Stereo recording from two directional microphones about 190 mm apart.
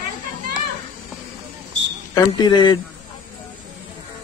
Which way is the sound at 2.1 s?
20° left (ahead or behind).